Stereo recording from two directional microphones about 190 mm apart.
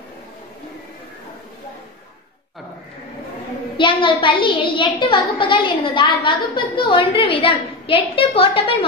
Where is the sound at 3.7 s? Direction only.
25° left (ahead or behind).